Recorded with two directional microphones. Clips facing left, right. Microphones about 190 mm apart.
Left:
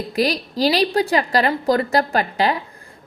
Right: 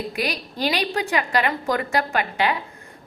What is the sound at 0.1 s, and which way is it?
A woman's voice, 35° left (ahead or behind).